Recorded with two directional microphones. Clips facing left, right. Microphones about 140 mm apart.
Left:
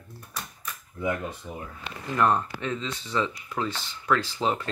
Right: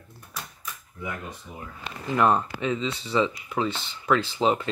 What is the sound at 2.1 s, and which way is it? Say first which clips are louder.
Speech: right 2 dB; 10° right (ahead or behind).